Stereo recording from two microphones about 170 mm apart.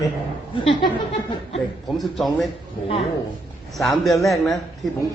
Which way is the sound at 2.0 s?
Centre (ahead or behind).